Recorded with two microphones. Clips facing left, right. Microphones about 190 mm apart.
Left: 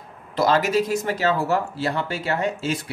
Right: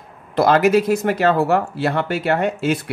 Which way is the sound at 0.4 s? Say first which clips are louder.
Right 5 dB; 60° right (ahead or behind).